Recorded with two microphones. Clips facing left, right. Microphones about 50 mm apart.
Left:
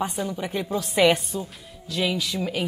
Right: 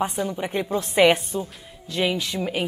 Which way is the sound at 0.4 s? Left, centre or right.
Centre.